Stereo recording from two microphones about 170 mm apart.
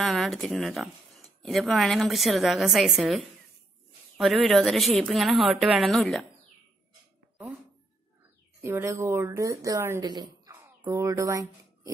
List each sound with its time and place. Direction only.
0.0 s speech: 5° left (ahead or behind)
8.6 s speech: 15° right (ahead or behind)